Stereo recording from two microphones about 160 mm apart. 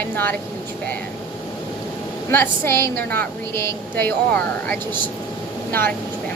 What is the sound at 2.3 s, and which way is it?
Speech, 15° left (ahead or behind).